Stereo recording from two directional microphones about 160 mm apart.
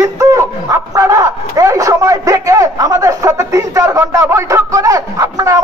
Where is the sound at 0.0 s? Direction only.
20° right (ahead or behind).